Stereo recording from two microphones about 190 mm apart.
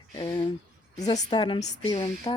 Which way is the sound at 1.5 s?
35° left (ahead or behind).